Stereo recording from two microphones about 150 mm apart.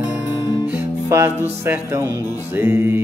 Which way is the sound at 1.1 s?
15° right (ahead or behind).